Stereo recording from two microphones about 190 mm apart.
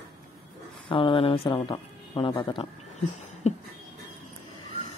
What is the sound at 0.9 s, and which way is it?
Music, 25° left (ahead or behind).